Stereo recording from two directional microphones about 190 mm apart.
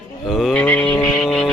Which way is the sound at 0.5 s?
10° left (ahead or behind).